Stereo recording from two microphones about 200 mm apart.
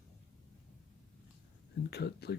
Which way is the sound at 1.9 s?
55° left (ahead or behind).